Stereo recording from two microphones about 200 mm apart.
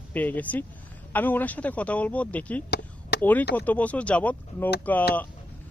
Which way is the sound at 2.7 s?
55° left (ahead or behind).